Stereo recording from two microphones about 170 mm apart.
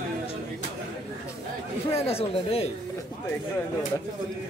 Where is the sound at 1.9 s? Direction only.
35° left (ahead or behind).